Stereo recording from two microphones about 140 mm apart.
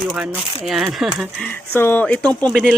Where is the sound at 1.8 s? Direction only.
15° left (ahead or behind).